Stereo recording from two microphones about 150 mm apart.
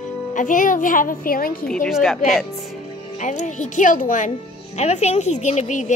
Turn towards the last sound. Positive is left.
turn(degrees=55)  # may be behind; listen again after turning